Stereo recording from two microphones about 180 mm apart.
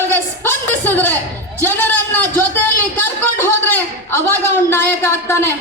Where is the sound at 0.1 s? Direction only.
10° left (ahead or behind).